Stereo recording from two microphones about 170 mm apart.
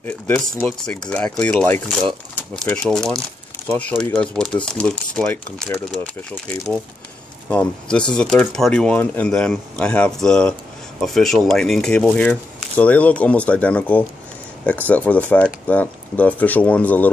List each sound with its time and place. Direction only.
0.3 s speech: 5° left (ahead or behind)
7.4 s speech: 5° left (ahead or behind)